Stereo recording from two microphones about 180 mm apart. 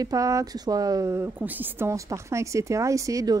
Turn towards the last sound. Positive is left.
turn(degrees=-20)  # may be behind; listen again after turning